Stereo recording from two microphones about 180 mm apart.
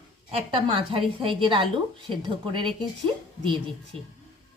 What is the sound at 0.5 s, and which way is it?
A woman's voice, 30° right (ahead or behind).